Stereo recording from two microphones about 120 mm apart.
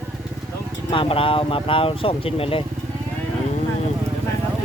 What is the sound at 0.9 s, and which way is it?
Speech, 45° left (ahead or behind).